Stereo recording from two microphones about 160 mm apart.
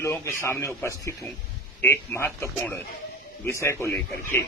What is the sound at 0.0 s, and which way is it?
A man's voice, 15° left (ahead or behind).